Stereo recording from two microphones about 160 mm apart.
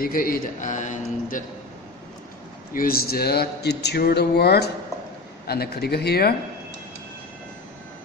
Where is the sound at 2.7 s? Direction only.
65° left (ahead or behind); by 6.3 s 80° left.